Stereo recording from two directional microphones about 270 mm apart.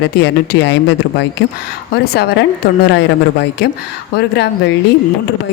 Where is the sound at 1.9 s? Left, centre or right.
Left.